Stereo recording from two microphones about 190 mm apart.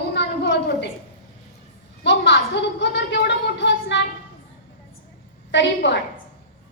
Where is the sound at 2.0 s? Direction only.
70° left (ahead or behind).